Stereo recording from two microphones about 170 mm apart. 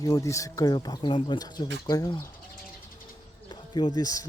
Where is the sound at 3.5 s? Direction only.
25° left (ahead or behind).